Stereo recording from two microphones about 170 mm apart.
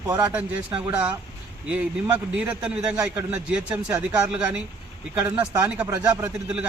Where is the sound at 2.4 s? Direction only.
5° right (ahead or behind).